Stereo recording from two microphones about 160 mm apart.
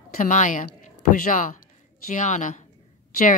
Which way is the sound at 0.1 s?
55° left (ahead or behind).